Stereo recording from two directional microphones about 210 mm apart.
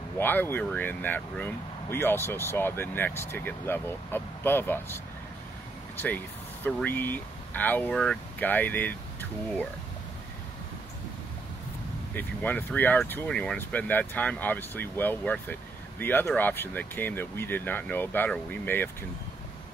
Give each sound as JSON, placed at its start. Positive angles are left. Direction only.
{"t": 0.2, "sound": "speech", "side_deg": 10}
{"t": 12.1, "sound": "speech", "side_deg": 10}